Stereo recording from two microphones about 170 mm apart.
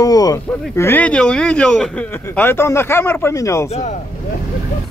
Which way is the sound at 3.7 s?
45° left (ahead or behind).